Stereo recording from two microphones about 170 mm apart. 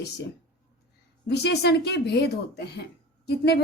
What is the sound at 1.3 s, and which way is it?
Speech, 75° left (ahead or behind).